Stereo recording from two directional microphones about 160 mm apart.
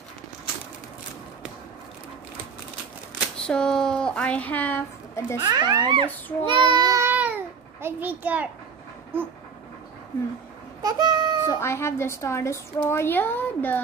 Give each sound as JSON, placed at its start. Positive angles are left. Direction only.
{"t": 3.3, "sound": "a woman's voice", "side_deg": 5}
{"t": 5.4, "sound": "a child's voice", "side_deg": -25}
{"t": 6.4, "sound": "child singing", "side_deg": -30}
{"t": 7.8, "sound": "a child's voice", "side_deg": -10}
{"t": 10.8, "sound": "babbling", "side_deg": -25}
{"t": 11.4, "sound": "a woman's voice", "side_deg": 15}